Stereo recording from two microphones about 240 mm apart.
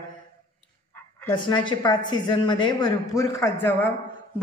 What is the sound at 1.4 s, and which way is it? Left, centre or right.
A woman's voice, centre.